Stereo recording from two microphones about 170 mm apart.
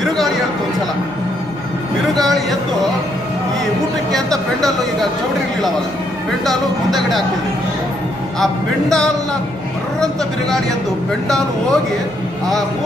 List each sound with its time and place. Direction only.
2.1 s speech: centre (ahead or behind)
4.1 s speech: centre (ahead or behind)
6.4 s speech: centre (ahead or behind)
11.2 s speech: centre (ahead or behind)